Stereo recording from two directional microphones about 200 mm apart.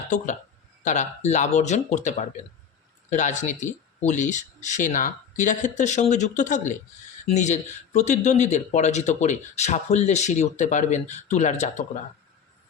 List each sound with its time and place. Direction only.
0.9 s speech: 35° left (ahead or behind)